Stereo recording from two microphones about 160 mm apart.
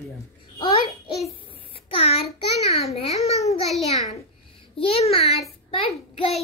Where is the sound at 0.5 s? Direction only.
35° left (ahead or behind).